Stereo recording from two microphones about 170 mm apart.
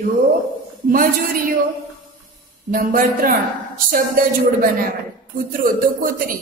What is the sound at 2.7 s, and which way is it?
Speech, 55° right (ahead or behind).